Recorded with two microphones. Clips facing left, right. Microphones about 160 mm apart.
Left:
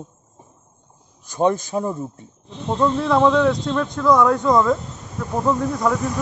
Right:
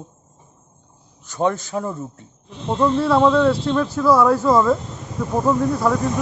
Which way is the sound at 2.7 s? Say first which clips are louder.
Right 1 dB; 5° right (ahead or behind).